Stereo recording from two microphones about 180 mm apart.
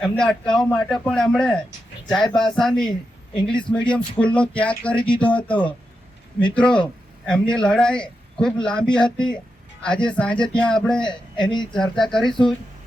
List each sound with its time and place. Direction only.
0.0 s a man's voice: 5° left (ahead or behind)